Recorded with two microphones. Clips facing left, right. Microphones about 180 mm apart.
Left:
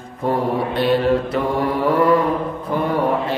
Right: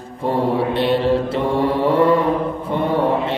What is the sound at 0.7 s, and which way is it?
Mantra, 25° right (ahead or behind).